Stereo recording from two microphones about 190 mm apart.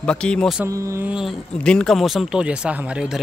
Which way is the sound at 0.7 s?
15° right (ahead or behind).